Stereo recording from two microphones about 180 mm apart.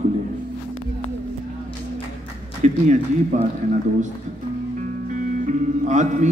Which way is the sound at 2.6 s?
40° right (ahead or behind).